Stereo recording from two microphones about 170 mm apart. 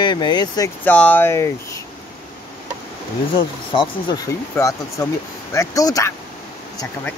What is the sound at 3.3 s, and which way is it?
Speech, 30° left (ahead or behind).